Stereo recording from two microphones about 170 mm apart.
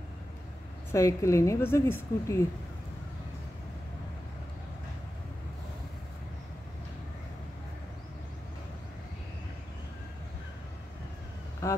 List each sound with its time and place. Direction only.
0.9 s a woman's voice: 20° left (ahead or behind)